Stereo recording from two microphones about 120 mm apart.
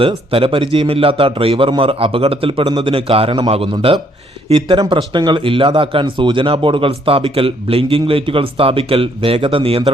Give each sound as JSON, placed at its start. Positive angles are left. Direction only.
{"t": 0.0, "sound": "speech", "side_deg": -50}
{"t": 2.6, "sound": "a man's voice", "side_deg": -35}
{"t": 2.9, "sound": "speech", "side_deg": -50}